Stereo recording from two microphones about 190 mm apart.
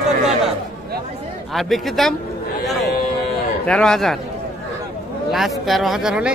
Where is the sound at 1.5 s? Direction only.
Centre (ahead or behind).